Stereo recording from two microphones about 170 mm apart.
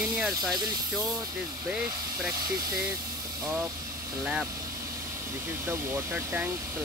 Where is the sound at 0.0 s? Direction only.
5° right (ahead or behind).